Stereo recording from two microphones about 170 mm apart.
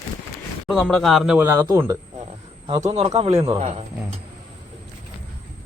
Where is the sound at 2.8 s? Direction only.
35° right (ahead or behind).